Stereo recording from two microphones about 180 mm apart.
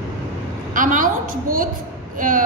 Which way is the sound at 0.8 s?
45° right (ahead or behind).